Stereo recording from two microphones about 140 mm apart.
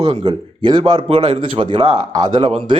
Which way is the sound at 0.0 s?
35° right (ahead or behind).